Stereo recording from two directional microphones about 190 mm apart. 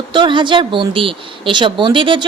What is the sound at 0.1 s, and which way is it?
Speech, 25° right (ahead or behind).